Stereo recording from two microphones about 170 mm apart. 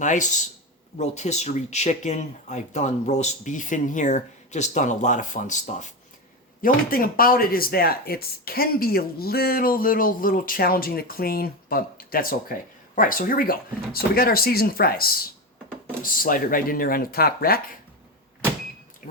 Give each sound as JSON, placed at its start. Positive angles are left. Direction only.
{"t": 0.0, "sound": "speech", "side_deg": 45}
{"t": 6.6, "sound": "speech", "side_deg": 55}